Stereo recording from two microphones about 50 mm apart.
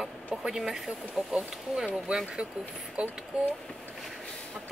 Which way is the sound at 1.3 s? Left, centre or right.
Centre.